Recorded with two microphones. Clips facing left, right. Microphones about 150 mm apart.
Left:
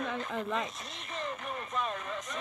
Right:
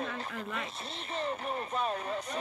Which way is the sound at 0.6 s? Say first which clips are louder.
Right 2 dB; 30° right (ahead or behind).